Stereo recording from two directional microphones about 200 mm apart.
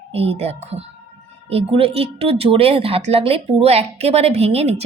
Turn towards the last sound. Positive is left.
turn(degrees=-30)  # may be behind; listen again after turning